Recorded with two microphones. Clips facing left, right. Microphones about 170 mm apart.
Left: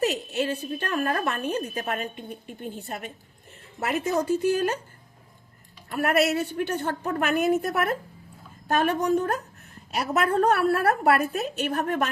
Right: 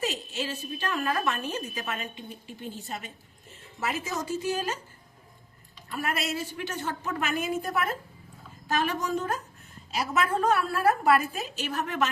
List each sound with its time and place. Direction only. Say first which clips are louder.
0.0 s a woman's voice: left 7 dB; 65° left (ahead or behind)
5.9 s a woman's voice: left 8 dB; 60° left (ahead or behind)